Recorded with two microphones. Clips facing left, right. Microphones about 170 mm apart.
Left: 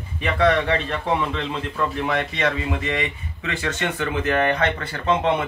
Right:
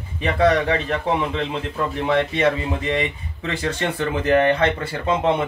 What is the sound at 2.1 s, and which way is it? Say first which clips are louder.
Speech: right 4 dB; 30° right (ahead or behind).